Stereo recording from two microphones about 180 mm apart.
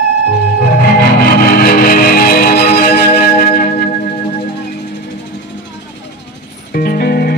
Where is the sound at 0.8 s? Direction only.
60° left (ahead or behind).